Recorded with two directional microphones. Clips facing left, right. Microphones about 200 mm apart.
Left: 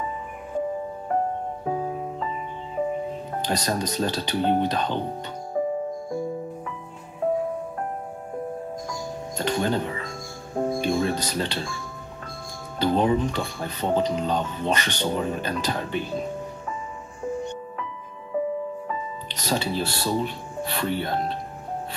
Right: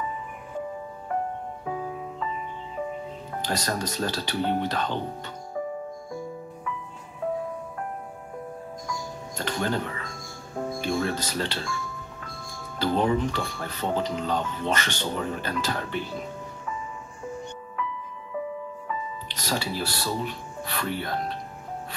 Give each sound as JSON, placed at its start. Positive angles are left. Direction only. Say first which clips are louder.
{"t": 1.1, "sound": "music", "louder": "left 4 dB", "side_deg": 35}
{"t": 3.4, "sound": "speech", "louder": "left 2 dB", "side_deg": 20}
{"t": 5.5, "sound": "music", "louder": "left 7 dB", "side_deg": 35}
{"t": 9.4, "sound": "speech", "louder": "left 4 dB", "side_deg": 20}
{"t": 10.5, "sound": "music", "louder": "left 6 dB", "side_deg": 35}
{"t": 10.8, "sound": "music", "louder": "even", "side_deg": 20}
{"t": 12.7, "sound": "speech", "louder": "left 3 dB", "side_deg": 20}
{"t": 17.7, "sound": "music", "louder": "right 2 dB", "side_deg": 35}
{"t": 19.2, "sound": "speech", "louder": "left 4 dB", "side_deg": 20}